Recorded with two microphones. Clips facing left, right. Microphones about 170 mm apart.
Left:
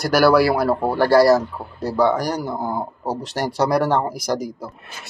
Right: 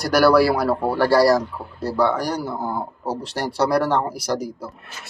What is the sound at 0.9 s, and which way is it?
Speech, 5° right (ahead or behind).